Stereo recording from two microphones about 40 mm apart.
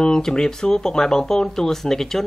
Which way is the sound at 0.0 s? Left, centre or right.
Centre.